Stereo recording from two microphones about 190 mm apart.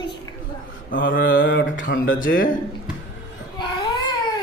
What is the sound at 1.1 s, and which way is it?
Mantra, 50° left (ahead or behind).